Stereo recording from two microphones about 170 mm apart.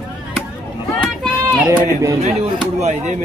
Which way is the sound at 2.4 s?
40° right (ahead or behind).